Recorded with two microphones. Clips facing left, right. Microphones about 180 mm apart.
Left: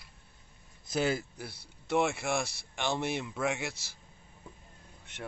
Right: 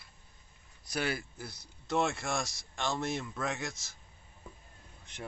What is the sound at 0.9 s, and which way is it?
Speech, 25° left (ahead or behind).